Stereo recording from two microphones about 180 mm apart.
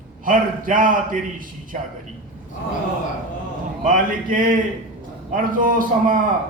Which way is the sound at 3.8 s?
50° right (ahead or behind).